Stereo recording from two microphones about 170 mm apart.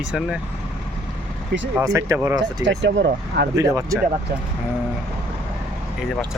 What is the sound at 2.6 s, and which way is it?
Speech, 90° right.